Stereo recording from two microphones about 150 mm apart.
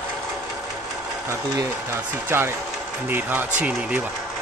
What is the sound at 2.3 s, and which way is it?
Speech, 15° right (ahead or behind).